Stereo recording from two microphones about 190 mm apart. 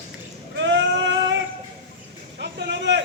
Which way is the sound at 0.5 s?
70° right (ahead or behind).